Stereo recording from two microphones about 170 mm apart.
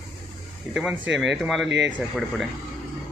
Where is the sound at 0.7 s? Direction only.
5° right (ahead or behind).